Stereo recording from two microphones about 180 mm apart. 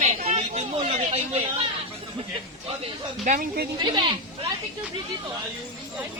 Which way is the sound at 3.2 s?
50° right (ahead or behind).